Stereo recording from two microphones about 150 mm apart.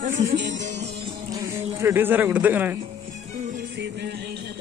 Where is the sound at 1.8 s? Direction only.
15° right (ahead or behind).